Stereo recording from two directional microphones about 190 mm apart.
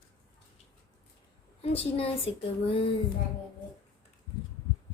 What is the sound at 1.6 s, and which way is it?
Speech, 30° left (ahead or behind).